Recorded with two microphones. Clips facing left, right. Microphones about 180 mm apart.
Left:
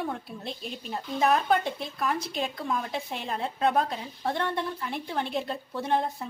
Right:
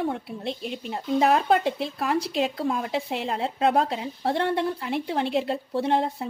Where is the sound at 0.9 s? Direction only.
30° right (ahead or behind).